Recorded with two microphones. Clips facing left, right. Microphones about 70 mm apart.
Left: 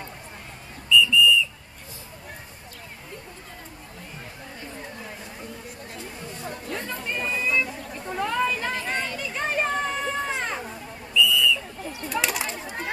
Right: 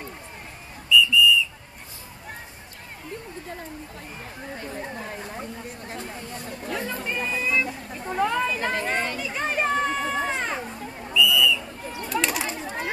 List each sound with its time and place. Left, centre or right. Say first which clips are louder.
0.8 s whistle: even; centre
6.7 s a sound: right 3 dB; centre
8.7 s chatter: right 3 dB; right
9.2 s children playing: right 1 dB; centre
11.1 s whistle: right 1 dB; centre
12.1 s bird: right 1 dB; centre